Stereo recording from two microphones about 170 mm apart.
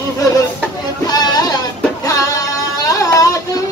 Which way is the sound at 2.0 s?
20° left (ahead or behind).